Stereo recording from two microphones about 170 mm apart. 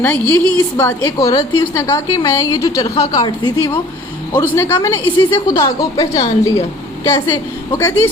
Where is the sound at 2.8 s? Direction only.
35° left (ahead or behind).